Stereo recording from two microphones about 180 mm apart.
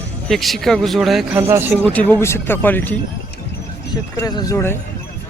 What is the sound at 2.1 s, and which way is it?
Speech, 15° left (ahead or behind).